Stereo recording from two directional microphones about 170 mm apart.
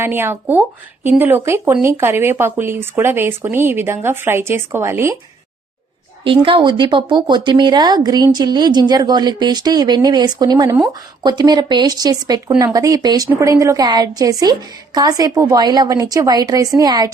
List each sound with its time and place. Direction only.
0.0 s speech: 15° right (ahead or behind)
6.2 s speech: 30° right (ahead or behind)